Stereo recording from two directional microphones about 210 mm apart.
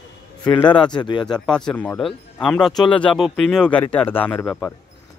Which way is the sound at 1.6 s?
5° left (ahead or behind).